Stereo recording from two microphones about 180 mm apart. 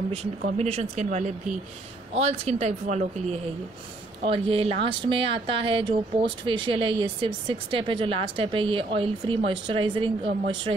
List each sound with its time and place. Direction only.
0.6 s speech: 35° right (ahead or behind)